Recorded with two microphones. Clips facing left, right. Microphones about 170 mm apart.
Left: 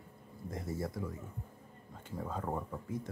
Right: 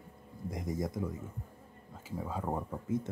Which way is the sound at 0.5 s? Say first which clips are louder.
Right 3 dB; 15° right (ahead or behind).